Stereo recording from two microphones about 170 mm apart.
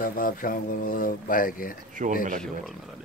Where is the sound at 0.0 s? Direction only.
55° left (ahead or behind).